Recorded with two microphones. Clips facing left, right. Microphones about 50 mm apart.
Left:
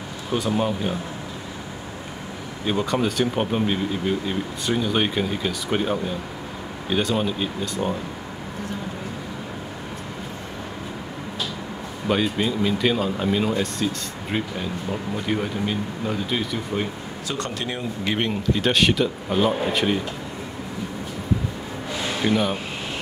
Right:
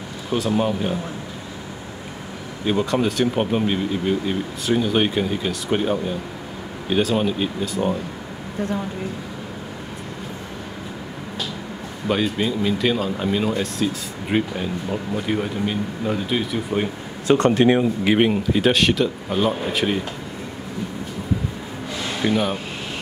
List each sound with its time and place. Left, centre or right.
0.4 s speech: centre
2.6 s speech: centre
12.1 s speech: centre
14.3 s speech: centre
17.3 s speech: right
18.0 s speech: centre
22.2 s speech: centre